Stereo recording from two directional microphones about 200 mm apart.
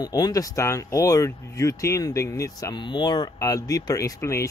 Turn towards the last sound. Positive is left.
turn(degrees=15)  # may be behind; listen again after turning